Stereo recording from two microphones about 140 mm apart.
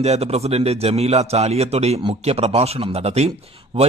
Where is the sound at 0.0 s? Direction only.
50° right (ahead or behind).